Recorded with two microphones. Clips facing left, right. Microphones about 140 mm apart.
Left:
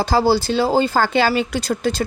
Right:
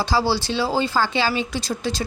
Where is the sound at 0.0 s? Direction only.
50° left (ahead or behind).